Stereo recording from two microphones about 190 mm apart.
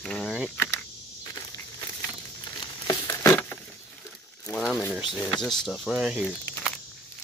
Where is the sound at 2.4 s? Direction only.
20° left (ahead or behind); by 5.0 s 5° left (ahead or behind).